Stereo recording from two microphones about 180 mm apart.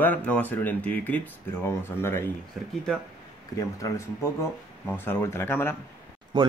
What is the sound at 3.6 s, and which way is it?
Speech, 20° left (ahead or behind).